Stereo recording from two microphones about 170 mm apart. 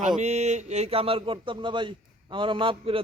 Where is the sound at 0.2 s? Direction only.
40° right (ahead or behind).